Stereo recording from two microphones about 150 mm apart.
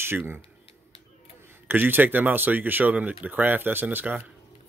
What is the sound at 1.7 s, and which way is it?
Speech, 15° right (ahead or behind).